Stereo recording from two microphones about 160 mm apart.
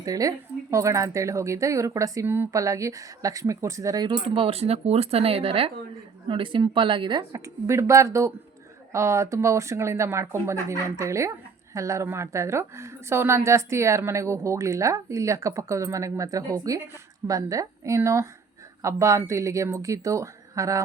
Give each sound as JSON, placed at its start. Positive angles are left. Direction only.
{"t": 0.0, "sound": "a woman's voice", "side_deg": -20}
{"t": 4.4, "sound": "a woman's voice", "side_deg": -40}